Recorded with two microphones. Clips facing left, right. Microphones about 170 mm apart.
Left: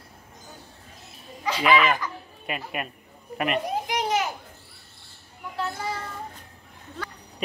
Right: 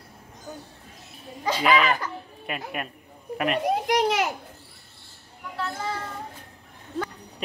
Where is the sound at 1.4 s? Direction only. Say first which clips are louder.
Right 1 dB; 35° right (ahead or behind).